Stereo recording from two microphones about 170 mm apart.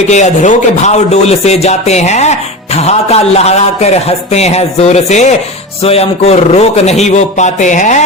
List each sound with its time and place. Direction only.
0.1 s speech: 45° left (ahead or behind)